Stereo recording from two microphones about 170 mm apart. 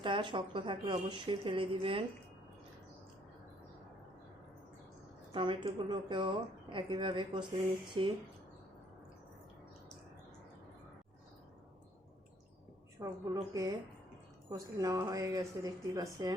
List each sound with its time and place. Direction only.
0.0 s speech: 30° right (ahead or behind)
5.3 s speech: 30° right (ahead or behind)
13.0 s speech: 20° right (ahead or behind)